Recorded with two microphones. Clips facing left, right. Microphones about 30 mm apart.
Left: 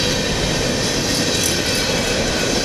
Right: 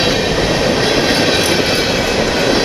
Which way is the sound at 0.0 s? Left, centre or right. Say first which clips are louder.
Right 5 dB; right.